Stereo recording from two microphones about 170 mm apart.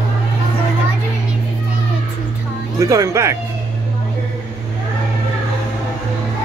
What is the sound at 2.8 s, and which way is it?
Speech, 20° right (ahead or behind).